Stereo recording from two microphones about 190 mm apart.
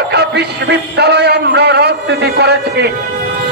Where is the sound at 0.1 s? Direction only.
60° right (ahead or behind).